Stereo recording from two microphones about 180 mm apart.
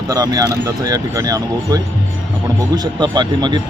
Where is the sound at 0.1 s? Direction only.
20° right (ahead or behind).